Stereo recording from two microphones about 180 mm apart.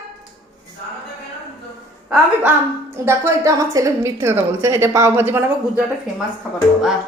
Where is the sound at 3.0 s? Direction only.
15° right (ahead or behind).